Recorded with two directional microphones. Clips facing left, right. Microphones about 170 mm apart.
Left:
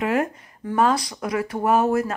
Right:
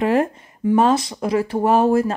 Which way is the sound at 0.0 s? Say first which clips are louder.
Right 4 dB; 30° right (ahead or behind).